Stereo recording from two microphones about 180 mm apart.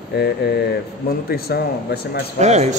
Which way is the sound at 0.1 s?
65° left (ahead or behind).